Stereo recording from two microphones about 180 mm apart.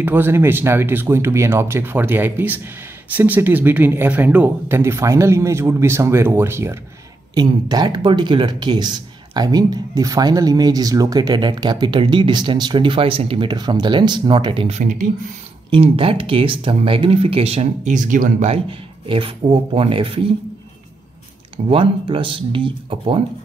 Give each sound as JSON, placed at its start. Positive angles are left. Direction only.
{"t": 0.0, "sound": "speech", "side_deg": -10}
{"t": 7.3, "sound": "speech", "side_deg": -25}
{"t": 14.8, "sound": "speech", "side_deg": -45}
{"t": 15.7, "sound": "speech", "side_deg": -30}
{"t": 18.5, "sound": "speech", "side_deg": -30}
{"t": 21.6, "sound": "speech", "side_deg": -30}